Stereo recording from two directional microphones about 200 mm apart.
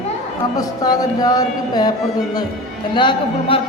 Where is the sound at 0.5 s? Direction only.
20° left (ahead or behind).